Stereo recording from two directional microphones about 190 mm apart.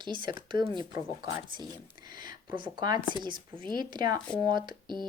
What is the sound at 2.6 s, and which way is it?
Speech, 25° right (ahead or behind).